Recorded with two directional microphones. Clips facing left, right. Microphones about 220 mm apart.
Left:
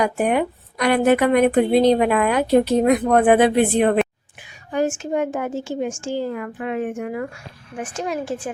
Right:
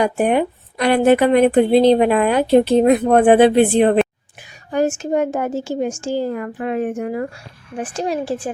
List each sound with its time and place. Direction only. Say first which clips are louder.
0.0 s a woman's voice: right 3 dB; 30° right (ahead or behind)
4.4 s a woman's voice: right 3 dB; 40° right (ahead or behind)